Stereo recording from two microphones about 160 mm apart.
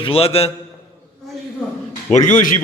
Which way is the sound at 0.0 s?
35° left (ahead or behind).